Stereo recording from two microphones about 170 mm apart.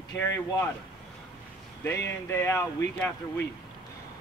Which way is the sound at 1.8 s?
15° left (ahead or behind).